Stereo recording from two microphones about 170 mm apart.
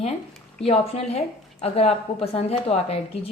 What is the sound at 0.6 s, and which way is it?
A woman's voice, 35° left (ahead or behind).